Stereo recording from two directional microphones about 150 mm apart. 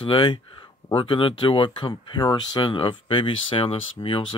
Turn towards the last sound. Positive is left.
turn(degrees=35)  # may be behind; listen again after turning